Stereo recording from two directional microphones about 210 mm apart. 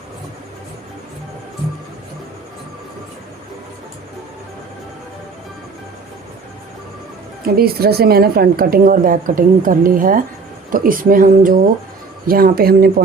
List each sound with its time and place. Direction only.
7.4 s a woman's voice: 45° right (ahead or behind)